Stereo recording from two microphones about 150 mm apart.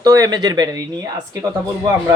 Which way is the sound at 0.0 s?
25° right (ahead or behind).